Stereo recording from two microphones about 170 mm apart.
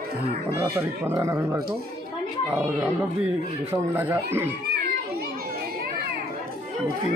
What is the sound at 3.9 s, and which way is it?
Speech, 15° right (ahead or behind).